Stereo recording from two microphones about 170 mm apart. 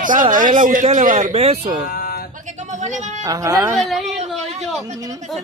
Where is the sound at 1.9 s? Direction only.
60° left (ahead or behind).